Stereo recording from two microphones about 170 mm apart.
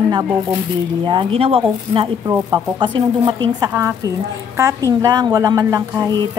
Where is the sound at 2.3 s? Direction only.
20° right (ahead or behind).